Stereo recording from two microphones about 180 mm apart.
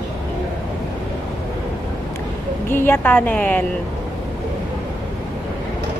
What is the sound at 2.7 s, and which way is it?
Speech, 10° left (ahead or behind).